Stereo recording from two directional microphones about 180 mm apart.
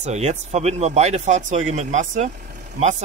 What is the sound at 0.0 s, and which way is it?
Speech, 40° right (ahead or behind).